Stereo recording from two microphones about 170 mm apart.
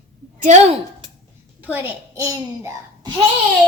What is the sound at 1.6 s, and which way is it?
A child's voice, 15° right (ahead or behind).